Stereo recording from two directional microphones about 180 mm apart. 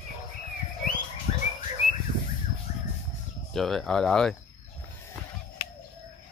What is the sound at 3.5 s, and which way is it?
Speech, centre (ahead or behind).